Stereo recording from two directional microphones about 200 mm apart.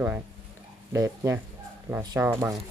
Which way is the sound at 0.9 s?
15° right (ahead or behind).